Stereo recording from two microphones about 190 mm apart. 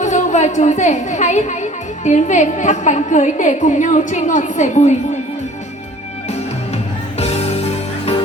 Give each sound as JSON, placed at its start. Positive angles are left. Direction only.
{"t": 0.0, "sound": "a woman's voice", "side_deg": 40}
{"t": 7.2, "sound": "music", "side_deg": 35}